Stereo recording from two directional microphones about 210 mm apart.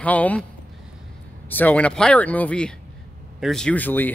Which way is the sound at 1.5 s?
10° left (ahead or behind).